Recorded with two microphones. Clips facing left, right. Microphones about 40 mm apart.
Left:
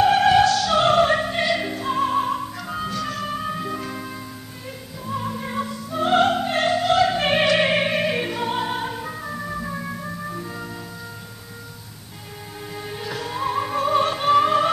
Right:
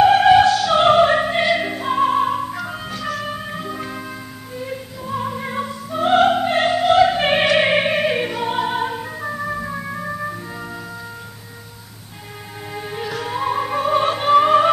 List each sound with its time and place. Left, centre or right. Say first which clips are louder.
0.0 s opera: right 4 dB; centre
10.3 s organ: right 1 dB; centre
12.7 s music: right 4 dB; centre